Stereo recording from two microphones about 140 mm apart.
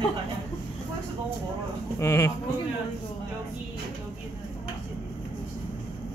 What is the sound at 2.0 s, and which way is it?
Speech, 20° left (ahead or behind).